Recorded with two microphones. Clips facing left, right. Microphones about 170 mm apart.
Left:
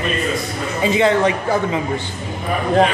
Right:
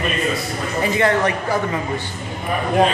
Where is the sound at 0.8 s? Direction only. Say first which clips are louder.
Left 3 dB; 20° left (ahead or behind).